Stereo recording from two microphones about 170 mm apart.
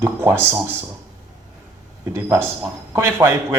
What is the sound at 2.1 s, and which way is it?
Speech, 15° right (ahead or behind).